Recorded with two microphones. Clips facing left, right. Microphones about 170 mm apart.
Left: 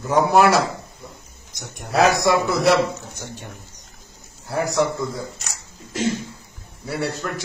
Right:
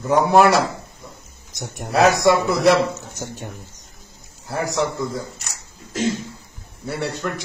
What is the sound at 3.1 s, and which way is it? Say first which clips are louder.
Speech: right 3 dB; 45° right (ahead or behind).